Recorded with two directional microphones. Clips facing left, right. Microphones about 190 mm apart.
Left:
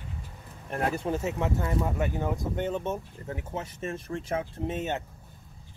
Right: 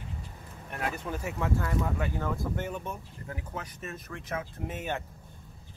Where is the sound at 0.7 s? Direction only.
35° left (ahead or behind).